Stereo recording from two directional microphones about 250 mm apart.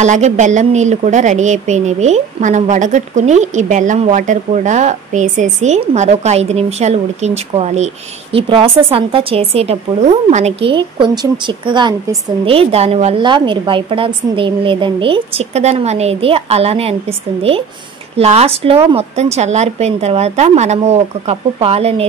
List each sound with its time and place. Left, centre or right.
0.0 s speech: right